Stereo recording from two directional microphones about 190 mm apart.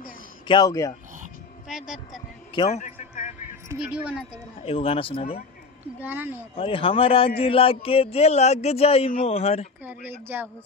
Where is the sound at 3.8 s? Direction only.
5° right (ahead or behind).